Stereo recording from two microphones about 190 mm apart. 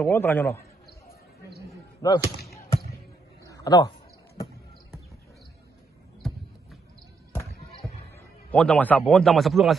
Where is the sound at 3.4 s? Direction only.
20° left (ahead or behind).